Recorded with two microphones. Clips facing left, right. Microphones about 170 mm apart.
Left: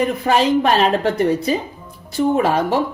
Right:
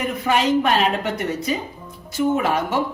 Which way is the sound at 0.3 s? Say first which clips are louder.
Left 2 dB; 35° left (ahead or behind).